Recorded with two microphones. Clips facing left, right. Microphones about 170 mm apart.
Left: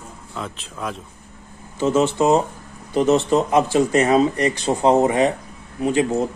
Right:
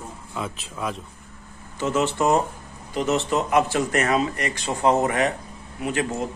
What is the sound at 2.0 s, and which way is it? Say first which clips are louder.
Speech: left 3 dB; 25° left (ahead or behind).